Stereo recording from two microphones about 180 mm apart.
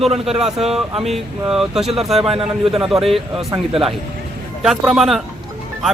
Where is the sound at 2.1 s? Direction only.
30° right (ahead or behind).